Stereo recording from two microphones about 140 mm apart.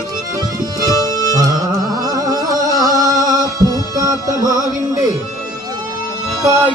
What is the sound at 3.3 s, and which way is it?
Music, 25° right (ahead or behind).